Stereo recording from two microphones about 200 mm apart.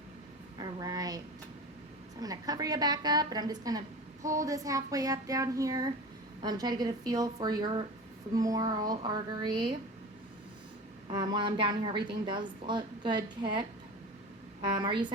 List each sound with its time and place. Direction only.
0.6 s a sound: 20° right (ahead or behind)
2.2 s a woman's voice: 20° right (ahead or behind)
11.1 s a woman's voice: 20° right (ahead or behind)